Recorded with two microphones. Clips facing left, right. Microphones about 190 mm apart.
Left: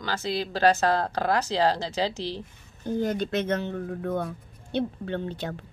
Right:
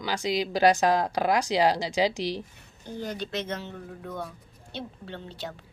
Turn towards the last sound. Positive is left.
turn(degrees=55)  # may be behind; listen again after turning